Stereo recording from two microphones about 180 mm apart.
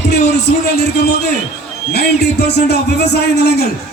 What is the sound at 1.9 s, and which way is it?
A man's voice, 65° left (ahead or behind).